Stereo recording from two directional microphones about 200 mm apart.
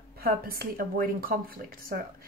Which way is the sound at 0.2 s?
50° right (ahead or behind).